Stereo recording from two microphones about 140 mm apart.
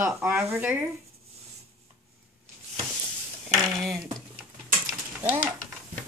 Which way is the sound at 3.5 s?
Centre (ahead or behind).